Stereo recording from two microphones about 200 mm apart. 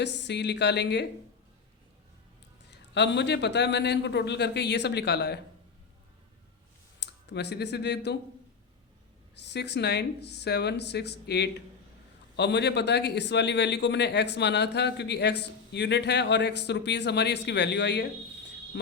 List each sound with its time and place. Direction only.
0.0 s speech: 60° left (ahead or behind)
2.6 s speech: 60° left (ahead or behind)
7.0 s speech: 60° left (ahead or behind)
9.3 s speech: 55° left (ahead or behind)